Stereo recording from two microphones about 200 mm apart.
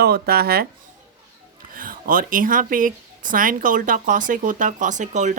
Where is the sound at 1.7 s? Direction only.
45° right (ahead or behind).